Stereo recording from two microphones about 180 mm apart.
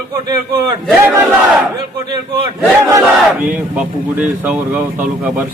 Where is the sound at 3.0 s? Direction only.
5° right (ahead or behind).